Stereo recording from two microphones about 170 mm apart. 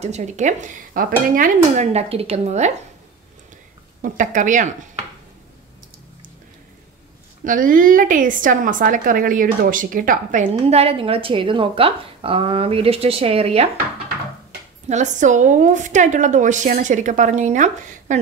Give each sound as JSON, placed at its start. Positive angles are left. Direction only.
{"t": 0.0, "sound": "a woman's voice", "side_deg": -45}
{"t": 4.0, "sound": "a woman's voice", "side_deg": -50}
{"t": 7.4, "sound": "a woman's voice", "side_deg": -55}
{"t": 14.9, "sound": "a woman's voice", "side_deg": -45}